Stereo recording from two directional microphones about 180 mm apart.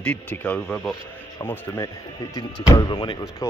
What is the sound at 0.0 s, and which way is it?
Speech, 10° left (ahead or behind).